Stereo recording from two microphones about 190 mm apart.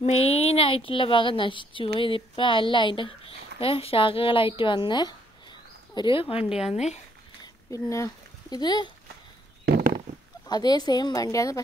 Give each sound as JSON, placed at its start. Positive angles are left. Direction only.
{"t": 0.0, "sound": "a woman's voice", "side_deg": 30}
{"t": 6.4, "sound": "speech", "side_deg": -5}
{"t": 7.4, "sound": "speech", "side_deg": 15}
{"t": 9.7, "sound": "a sound", "side_deg": -55}
{"t": 10.4, "sound": "a woman's voice", "side_deg": 20}